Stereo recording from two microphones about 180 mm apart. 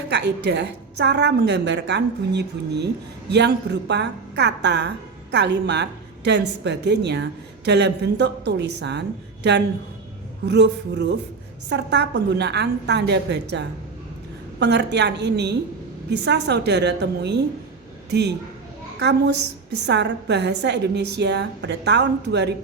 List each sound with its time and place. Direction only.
0.1 s a woman's voice: 70° right (ahead or behind)
19.8 s a woman's voice: 70° right (ahead or behind)